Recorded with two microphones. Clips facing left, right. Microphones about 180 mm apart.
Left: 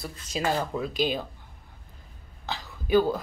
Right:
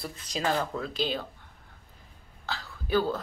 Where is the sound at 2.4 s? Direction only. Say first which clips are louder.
Left 4 dB; 20° left (ahead or behind).